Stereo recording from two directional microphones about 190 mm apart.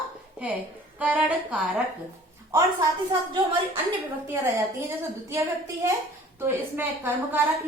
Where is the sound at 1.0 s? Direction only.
5° right (ahead or behind).